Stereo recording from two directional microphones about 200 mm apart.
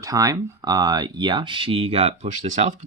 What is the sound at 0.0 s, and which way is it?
Speech, 15° right (ahead or behind).